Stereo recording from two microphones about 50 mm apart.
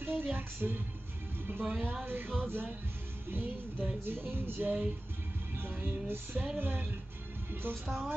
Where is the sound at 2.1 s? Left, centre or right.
Right.